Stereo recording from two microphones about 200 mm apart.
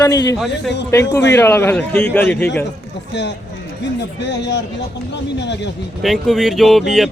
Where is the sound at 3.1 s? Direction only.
60° left (ahead or behind).